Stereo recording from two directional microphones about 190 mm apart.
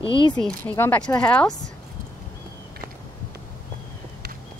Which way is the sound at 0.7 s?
10° left (ahead or behind).